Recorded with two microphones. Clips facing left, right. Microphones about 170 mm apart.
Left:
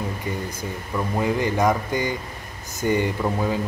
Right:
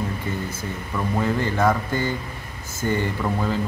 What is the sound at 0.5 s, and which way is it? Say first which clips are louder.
Speech: left 1 dB; 15° left (ahead or behind).